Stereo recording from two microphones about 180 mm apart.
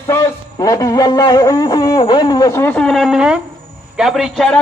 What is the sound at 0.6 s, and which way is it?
A man's voice, 20° left (ahead or behind).